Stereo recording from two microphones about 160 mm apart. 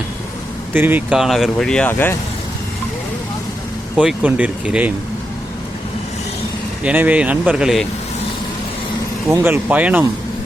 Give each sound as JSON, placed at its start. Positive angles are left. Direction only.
{"t": 0.7, "sound": "speech", "side_deg": -10}
{"t": 3.9, "sound": "speech", "side_deg": -10}
{"t": 6.8, "sound": "speech", "side_deg": -10}
{"t": 9.3, "sound": "speech", "side_deg": -15}